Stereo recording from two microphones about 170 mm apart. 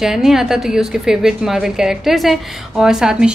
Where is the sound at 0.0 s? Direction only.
Centre (ahead or behind).